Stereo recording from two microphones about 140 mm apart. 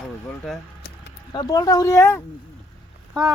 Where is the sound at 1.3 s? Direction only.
30° left (ahead or behind).